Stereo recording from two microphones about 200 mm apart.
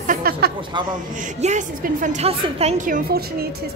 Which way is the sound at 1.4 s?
40° right (ahead or behind).